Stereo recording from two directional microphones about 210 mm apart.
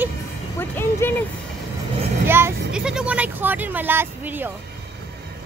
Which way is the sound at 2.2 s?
10° right (ahead or behind).